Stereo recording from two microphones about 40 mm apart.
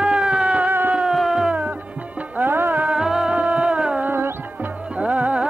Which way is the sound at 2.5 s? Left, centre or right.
Right.